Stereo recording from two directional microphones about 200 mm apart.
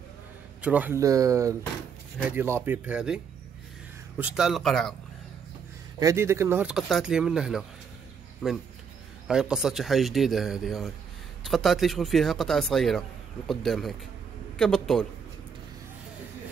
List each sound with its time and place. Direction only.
0.6 s speech: 5° right (ahead or behind)
4.2 s speech: centre (ahead or behind)
5.9 s a man's voice: 15° right (ahead or behind); by 15.0 s 5° left (ahead or behind)